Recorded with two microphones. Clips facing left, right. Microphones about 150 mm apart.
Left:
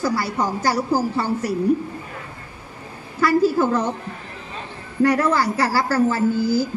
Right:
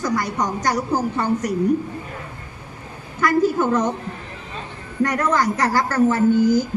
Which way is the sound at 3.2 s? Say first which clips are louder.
Left 1 dB; 35° left (ahead or behind).